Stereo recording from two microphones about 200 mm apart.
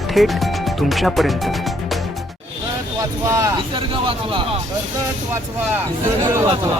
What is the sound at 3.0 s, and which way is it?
Speech, 15° right (ahead or behind).